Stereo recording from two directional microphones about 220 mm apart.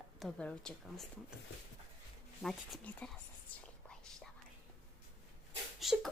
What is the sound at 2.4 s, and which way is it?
Music, centre (ahead or behind).